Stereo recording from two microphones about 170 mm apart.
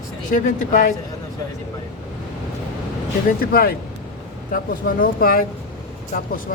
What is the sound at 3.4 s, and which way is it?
Speech, 60° left (ahead or behind).